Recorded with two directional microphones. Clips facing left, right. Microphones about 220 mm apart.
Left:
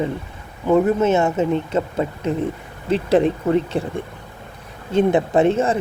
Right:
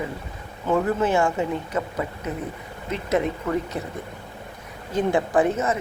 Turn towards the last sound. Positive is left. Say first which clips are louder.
# left 5 dB
turn(degrees=30)  # may be behind; listen again after turning